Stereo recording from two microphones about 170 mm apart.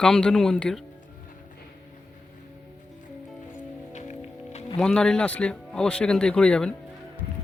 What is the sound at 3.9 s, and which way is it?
Music, 40° left (ahead or behind).